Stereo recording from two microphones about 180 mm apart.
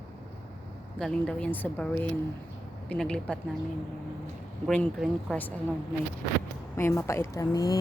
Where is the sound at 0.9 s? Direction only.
5° left (ahead or behind).